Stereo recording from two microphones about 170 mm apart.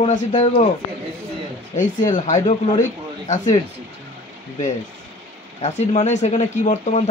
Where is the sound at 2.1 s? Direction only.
45° left (ahead or behind).